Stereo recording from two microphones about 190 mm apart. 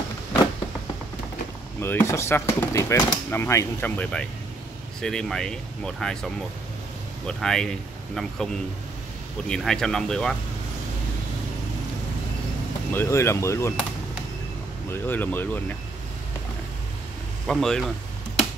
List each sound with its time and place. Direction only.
1.8 s speech: 10° left (ahead or behind)
9.5 s speech: centre (ahead or behind)
12.9 s speech: 15° left (ahead or behind)
14.9 s speech: 10° left (ahead or behind)
17.5 s speech: centre (ahead or behind)